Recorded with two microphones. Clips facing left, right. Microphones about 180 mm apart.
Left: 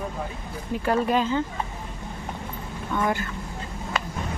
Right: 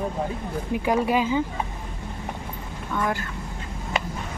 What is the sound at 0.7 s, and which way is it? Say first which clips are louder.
Speech: even; 15° right (ahead or behind).